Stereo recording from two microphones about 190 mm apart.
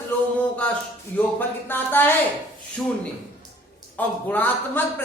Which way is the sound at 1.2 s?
10° left (ahead or behind).